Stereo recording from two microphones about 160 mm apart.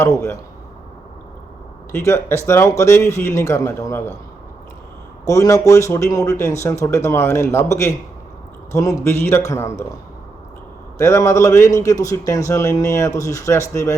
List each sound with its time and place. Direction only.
0.0 s speech: 15° left (ahead or behind)
1.9 s speech: 15° left (ahead or behind)
5.2 s speech: 20° left (ahead or behind)
10.9 s a man's voice: 20° left (ahead or behind)